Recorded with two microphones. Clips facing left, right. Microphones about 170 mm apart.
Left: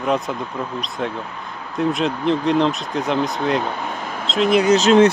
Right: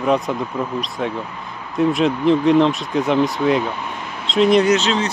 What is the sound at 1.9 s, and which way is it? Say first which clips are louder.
Speech: right 4 dB; centre (ahead or behind).